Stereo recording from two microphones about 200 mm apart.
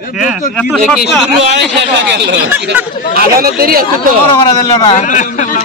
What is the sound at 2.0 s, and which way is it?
Speech, 60° right (ahead or behind).